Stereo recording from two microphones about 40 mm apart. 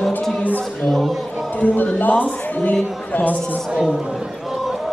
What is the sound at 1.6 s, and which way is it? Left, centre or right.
A woman's voice, left.